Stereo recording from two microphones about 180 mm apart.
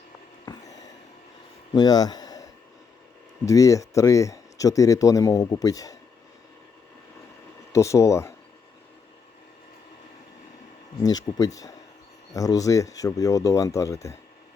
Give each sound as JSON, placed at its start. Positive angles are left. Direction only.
{"t": 1.7, "sound": "a sound", "side_deg": 20}
{"t": 3.4, "sound": "speech", "side_deg": 20}
{"t": 7.7, "sound": "speech", "side_deg": 15}
{"t": 11.0, "sound": "speech", "side_deg": 20}